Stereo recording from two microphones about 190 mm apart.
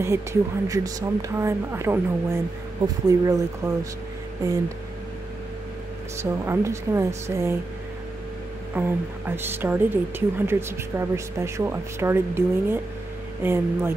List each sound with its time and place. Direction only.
0.0 s speech: 15° right (ahead or behind)
6.1 s speech: 15° right (ahead or behind)
8.7 s speech: 10° right (ahead or behind)